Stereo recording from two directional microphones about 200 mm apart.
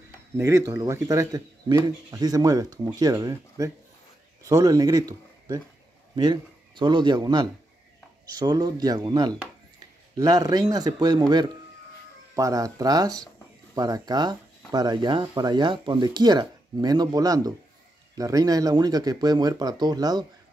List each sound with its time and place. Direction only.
0.4 s speech: 15° right (ahead or behind)